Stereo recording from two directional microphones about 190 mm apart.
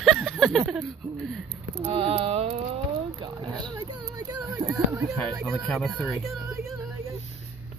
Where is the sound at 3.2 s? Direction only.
25° right (ahead or behind).